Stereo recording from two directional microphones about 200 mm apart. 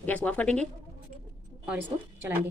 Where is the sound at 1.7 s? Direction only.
10° right (ahead or behind).